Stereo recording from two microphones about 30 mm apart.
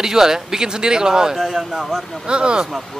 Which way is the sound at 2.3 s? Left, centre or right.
Right.